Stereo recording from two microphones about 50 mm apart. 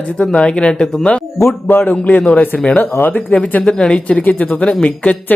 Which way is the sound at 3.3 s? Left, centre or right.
Left.